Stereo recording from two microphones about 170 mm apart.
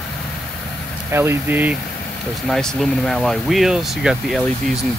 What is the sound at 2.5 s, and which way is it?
Speech, centre (ahead or behind).